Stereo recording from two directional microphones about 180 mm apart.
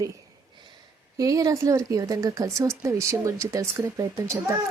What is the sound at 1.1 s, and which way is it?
Speech, 20° right (ahead or behind).